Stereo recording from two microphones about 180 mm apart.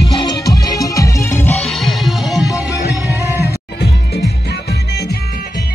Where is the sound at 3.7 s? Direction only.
65° left (ahead or behind).